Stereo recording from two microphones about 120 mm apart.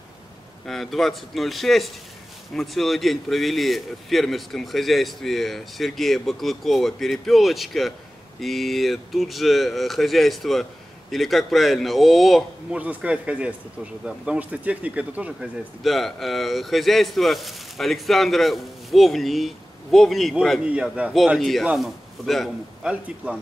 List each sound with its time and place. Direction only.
0.7 s a man's voice: centre (ahead or behind)
12.7 s speech: 10° right (ahead or behind)
15.8 s a man's voice: centre (ahead or behind)
23.2 s speech: 10° right (ahead or behind)